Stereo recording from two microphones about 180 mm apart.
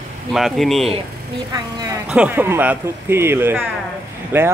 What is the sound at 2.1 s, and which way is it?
Speech, 10° right (ahead or behind).